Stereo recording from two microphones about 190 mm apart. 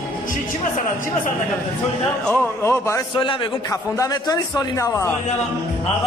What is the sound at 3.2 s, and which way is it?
A man's voice, 25° left (ahead or behind).